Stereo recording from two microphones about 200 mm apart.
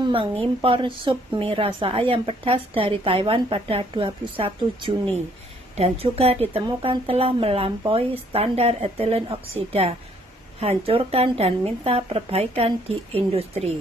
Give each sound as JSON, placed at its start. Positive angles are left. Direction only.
{"t": 0.0, "sound": "a woman's voice", "side_deg": -25}